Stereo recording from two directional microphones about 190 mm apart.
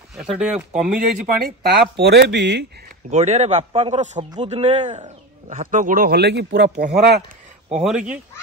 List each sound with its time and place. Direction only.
0.2 s speech: 5° right (ahead or behind)
1.2 s speech: 55° right (ahead or behind)
3.1 s a man's voice: 35° right (ahead or behind); by 7.2 s 55° right (ahead or behind)
7.8 s speech: 5° right (ahead or behind)